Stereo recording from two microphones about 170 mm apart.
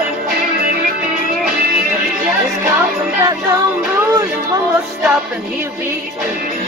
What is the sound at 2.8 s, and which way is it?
Music, 20° right (ahead or behind).